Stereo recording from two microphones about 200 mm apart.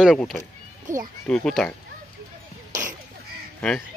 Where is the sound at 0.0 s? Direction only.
Centre (ahead or behind).